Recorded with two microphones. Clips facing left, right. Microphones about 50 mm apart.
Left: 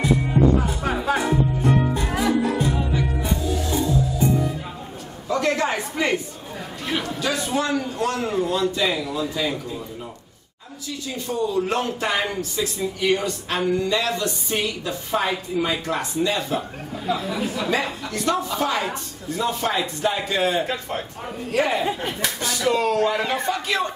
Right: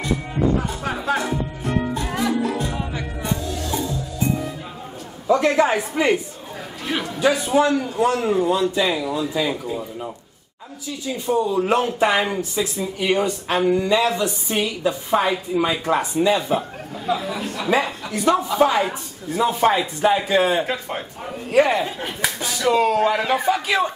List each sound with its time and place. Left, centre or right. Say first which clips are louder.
0.0 s music: left 3 dB; centre
2.8 s music: left 4 dB; centre
3.2 s music: left 1 dB; centre
5.3 s a sound: right 5 dB; centre
7.2 s speech: right 9 dB; centre
11.2 s speech: right 4 dB; centre